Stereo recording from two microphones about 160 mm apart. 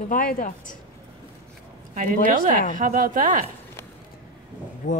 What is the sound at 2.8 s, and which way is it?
Speech, 55° right (ahead or behind).